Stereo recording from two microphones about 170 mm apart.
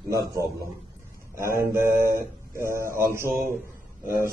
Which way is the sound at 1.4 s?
15° right (ahead or behind).